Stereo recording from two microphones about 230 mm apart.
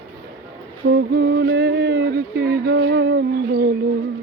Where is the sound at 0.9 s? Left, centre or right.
Right.